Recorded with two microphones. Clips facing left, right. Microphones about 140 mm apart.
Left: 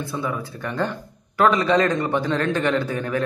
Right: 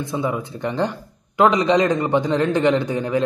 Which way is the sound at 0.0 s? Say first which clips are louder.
Right 4 dB; 20° right (ahead or behind).